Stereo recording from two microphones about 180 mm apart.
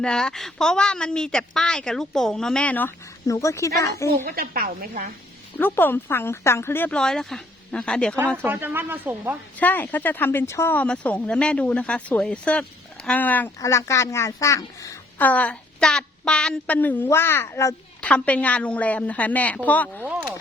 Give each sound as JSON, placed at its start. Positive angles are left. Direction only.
{"t": 0.0, "sound": "speech", "side_deg": 5}
{"t": 4.1, "sound": "speech", "side_deg": -55}
{"t": 5.5, "sound": "speech", "side_deg": 10}
{"t": 8.4, "sound": "speech", "side_deg": -10}
{"t": 9.6, "sound": "speech", "side_deg": 10}